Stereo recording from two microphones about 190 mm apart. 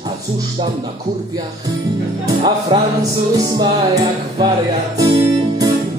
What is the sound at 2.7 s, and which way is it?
Music, 25° right (ahead or behind).